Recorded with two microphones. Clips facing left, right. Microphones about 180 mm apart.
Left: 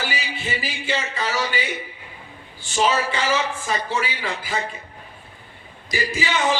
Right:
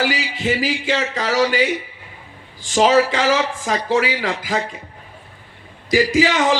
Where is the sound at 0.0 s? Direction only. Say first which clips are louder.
Right 8 dB; 90° right.